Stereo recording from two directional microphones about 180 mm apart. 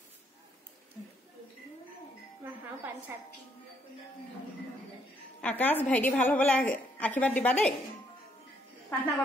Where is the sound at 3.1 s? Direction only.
10° right (ahead or behind).